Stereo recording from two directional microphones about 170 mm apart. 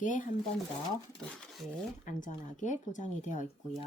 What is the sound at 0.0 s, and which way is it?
Speech, 50° left (ahead or behind).